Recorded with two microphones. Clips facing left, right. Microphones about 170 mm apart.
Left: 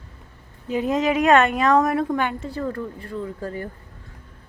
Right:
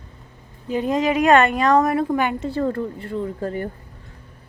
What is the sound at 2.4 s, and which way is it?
Speech, 30° right (ahead or behind).